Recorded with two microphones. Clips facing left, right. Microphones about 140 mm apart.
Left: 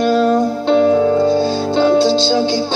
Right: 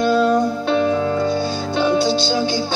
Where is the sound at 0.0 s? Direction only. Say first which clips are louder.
Left 2 dB; 25° left (ahead or behind).